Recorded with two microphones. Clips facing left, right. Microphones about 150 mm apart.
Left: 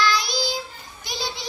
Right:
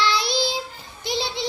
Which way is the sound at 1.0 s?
25° right (ahead or behind).